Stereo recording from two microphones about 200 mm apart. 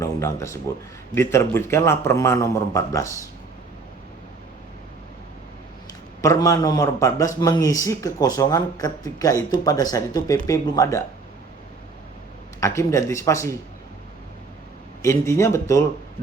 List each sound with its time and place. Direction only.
0.0 s a man's voice: 15° left (ahead or behind)
6.2 s a man's voice: 15° left (ahead or behind)
12.5 s a man's voice: 15° left (ahead or behind)
15.0 s a man's voice: 15° left (ahead or behind)